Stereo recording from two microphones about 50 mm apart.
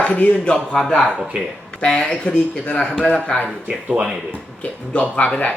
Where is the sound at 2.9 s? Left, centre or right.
Centre.